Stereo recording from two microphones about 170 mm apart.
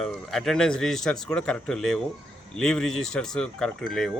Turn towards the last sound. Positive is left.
turn(degrees=5)  # may be behind; listen again after turning